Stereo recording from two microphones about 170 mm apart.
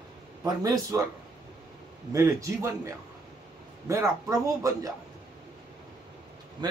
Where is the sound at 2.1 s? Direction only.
15° right (ahead or behind).